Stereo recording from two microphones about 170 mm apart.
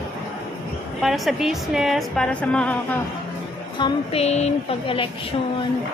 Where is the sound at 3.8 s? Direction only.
35° left (ahead or behind).